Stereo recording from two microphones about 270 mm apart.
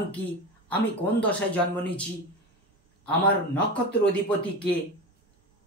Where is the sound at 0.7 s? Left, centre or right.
Centre.